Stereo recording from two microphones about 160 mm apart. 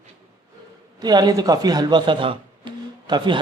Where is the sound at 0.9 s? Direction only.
25° right (ahead or behind).